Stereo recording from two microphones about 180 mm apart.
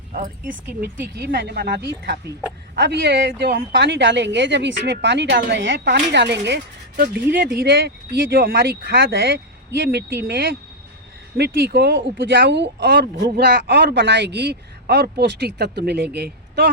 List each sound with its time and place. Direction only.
0.1 s speech: 45° right (ahead or behind)
0.8 s a man's voice: 65° right (ahead or behind)